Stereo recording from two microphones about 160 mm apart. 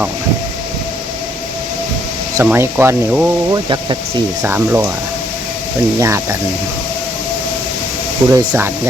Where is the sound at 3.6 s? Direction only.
30° right (ahead or behind).